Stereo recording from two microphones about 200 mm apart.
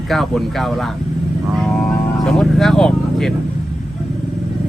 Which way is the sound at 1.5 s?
Centre (ahead or behind).